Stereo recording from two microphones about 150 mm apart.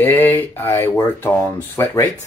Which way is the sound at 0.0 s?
15° left (ahead or behind).